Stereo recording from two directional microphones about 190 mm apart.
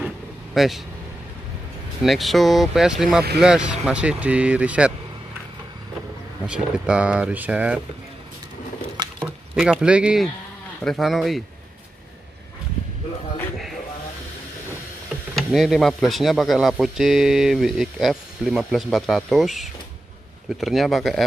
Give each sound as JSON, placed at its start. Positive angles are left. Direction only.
{"t": 0.6, "sound": "speech", "side_deg": 0}
{"t": 2.0, "sound": "speech", "side_deg": 0}
{"t": 6.4, "sound": "speech", "side_deg": -5}
{"t": 8.9, "sound": "a sound", "side_deg": -20}
{"t": 9.6, "sound": "speech", "side_deg": -5}
{"t": 15.3, "sound": "speech", "side_deg": 0}